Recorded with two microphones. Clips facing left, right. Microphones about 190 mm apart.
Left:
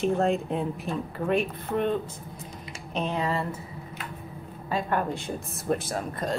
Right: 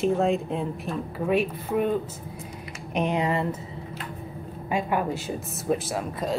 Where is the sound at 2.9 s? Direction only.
15° right (ahead or behind).